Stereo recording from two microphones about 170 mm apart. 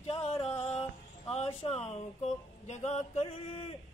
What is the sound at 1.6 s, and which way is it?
Speech, 40° left (ahead or behind).